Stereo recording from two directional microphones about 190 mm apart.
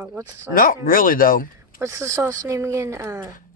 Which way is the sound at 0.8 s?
45° left (ahead or behind).